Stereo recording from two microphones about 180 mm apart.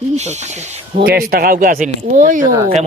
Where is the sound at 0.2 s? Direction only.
40° right (ahead or behind).